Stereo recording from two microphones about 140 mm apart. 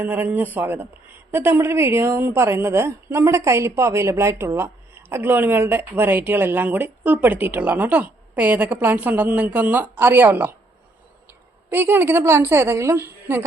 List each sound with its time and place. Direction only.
0.0 s a woman's voice: 10° right (ahead or behind)
11.7 s a woman's voice: 15° right (ahead or behind)